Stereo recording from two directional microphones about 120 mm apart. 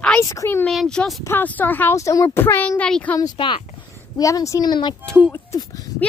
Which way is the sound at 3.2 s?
40° left (ahead or behind).